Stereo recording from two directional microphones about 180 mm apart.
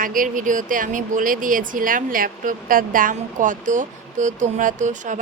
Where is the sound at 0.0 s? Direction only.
50° right (ahead or behind).